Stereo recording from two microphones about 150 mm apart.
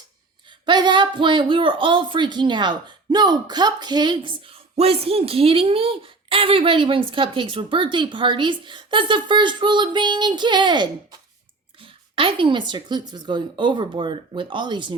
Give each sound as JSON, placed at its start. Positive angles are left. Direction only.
{"t": 0.6, "sound": "speech", "side_deg": -30}